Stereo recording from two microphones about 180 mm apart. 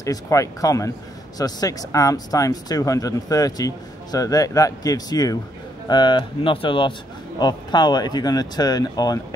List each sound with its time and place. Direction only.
0.0 s speech: 15° left (ahead or behind)